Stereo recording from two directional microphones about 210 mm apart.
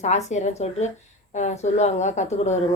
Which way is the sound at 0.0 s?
35° left (ahead or behind).